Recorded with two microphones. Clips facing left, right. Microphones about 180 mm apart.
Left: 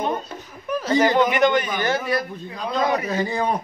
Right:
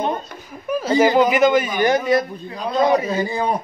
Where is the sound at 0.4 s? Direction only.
10° right (ahead or behind).